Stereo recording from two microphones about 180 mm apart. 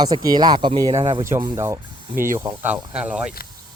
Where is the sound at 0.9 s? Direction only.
35° right (ahead or behind).